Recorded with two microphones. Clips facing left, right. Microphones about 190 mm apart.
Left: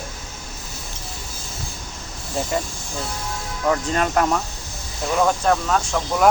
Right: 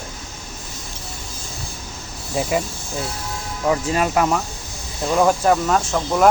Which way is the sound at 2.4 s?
5° right (ahead or behind).